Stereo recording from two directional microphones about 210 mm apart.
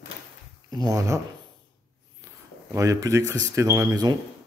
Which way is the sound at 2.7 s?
15° right (ahead or behind).